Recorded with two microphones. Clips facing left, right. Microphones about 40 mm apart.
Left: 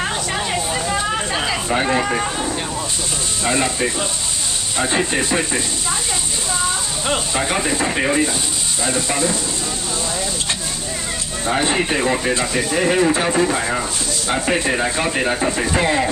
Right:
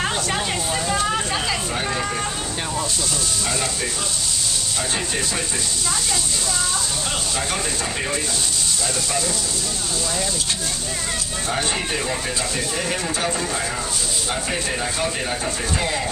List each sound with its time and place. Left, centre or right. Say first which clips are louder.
0.0 s vehicle: left 1 dB; centre
1.7 s speech: left 6 dB; left
3.4 s speech: left 10 dB; left
7.1 s speech: left 9 dB; left
11.4 s speech: left 7 dB; left